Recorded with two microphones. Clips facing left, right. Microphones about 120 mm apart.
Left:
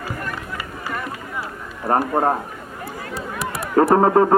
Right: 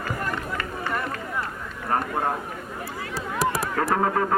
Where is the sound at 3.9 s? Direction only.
35° left (ahead or behind).